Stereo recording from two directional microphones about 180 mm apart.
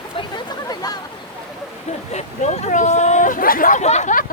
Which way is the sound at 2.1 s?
40° left (ahead or behind).